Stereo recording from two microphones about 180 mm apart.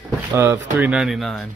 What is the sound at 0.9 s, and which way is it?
Speech, 5° right (ahead or behind).